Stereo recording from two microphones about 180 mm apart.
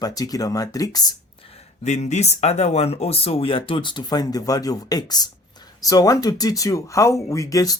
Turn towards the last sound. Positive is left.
turn(degrees=20)  # may be behind; listen again after turning